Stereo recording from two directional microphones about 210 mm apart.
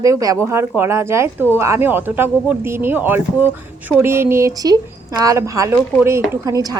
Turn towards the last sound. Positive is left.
turn(degrees=-15)  # may be behind; listen again after turning